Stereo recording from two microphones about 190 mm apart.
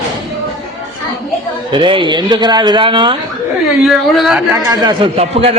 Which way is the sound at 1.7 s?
25° right (ahead or behind).